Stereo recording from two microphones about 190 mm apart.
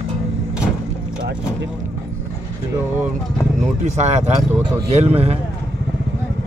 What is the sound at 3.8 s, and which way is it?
Speech, 35° right (ahead or behind).